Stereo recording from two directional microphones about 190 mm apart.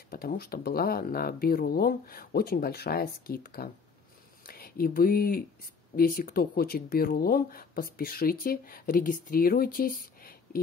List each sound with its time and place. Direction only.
0.1 s speech: 50° left (ahead or behind)